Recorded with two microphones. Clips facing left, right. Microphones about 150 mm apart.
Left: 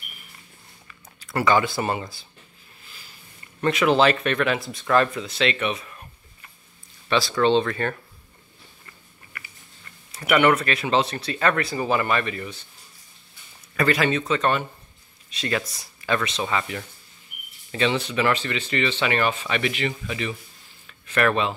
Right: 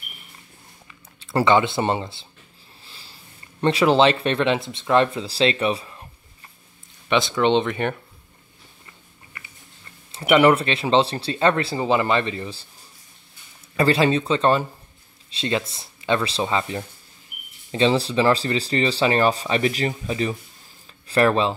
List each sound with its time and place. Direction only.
1.2 s speech: 25° right (ahead or behind)
2.8 s sniff: 30° right (ahead or behind)
3.6 s speech: 30° right (ahead or behind)
7.1 s speech: 20° right (ahead or behind)
9.3 s biting: 25° right (ahead or behind)
10.1 s speech: 25° right (ahead or behind)
13.7 s speech: 30° right (ahead or behind)